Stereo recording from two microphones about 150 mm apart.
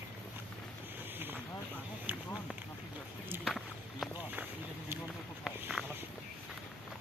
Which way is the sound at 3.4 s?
Centre (ahead or behind).